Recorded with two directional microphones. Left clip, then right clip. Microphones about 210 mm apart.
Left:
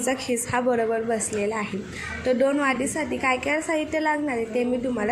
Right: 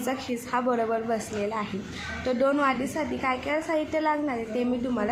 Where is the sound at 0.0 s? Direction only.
5° left (ahead or behind).